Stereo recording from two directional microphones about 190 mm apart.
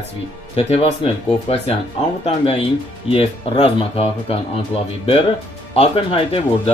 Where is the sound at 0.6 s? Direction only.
35° left (ahead or behind).